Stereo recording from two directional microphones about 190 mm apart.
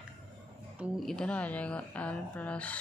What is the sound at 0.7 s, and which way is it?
Speech, 5° right (ahead or behind).